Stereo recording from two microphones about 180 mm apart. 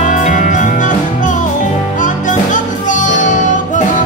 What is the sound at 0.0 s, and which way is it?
Music, 45° left (ahead or behind).